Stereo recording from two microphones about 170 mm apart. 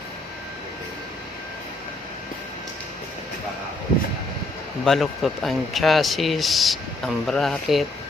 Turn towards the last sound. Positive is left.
turn(degrees=0)  # may be behind; listen again after turning